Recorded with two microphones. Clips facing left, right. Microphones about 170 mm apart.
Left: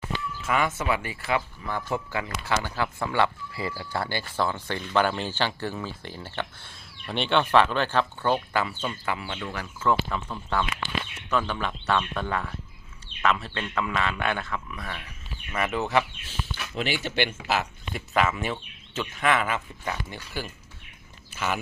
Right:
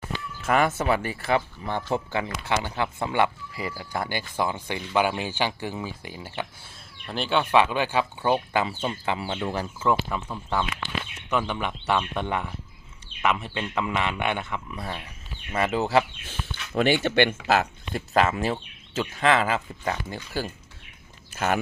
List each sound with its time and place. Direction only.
0.4 s speech: 40° right (ahead or behind)
9.8 s speech: 15° right (ahead or behind); by 16.0 s 30° right (ahead or behind)
16.7 s speech: 55° right (ahead or behind)